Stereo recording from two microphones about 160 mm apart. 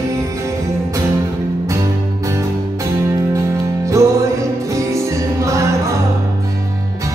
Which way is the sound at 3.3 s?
20° right (ahead or behind).